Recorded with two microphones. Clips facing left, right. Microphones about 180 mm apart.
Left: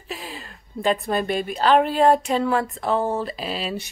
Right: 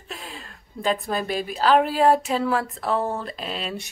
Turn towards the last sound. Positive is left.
turn(degrees=0)  # may be behind; listen again after turning